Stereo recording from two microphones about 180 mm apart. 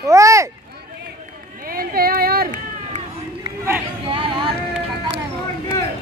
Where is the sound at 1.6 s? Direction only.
55° right (ahead or behind).